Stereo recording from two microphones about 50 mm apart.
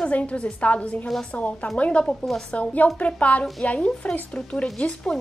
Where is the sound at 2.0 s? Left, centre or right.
Centre.